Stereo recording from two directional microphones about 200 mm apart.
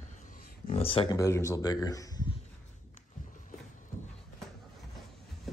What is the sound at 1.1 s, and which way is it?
A man's voice, 15° left (ahead or behind).